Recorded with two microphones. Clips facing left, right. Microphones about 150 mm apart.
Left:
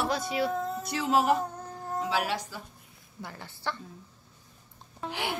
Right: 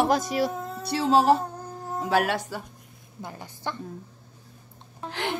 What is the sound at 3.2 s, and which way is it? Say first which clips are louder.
Speech: right 3 dB; 20° right (ahead or behind).